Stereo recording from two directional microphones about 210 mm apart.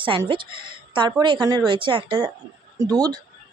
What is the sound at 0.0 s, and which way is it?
A woman's voice, 25° right (ahead or behind).